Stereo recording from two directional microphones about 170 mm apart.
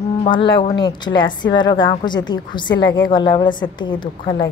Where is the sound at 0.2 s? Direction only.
30° left (ahead or behind).